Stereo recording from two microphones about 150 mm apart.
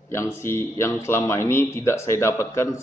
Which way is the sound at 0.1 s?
15° left (ahead or behind).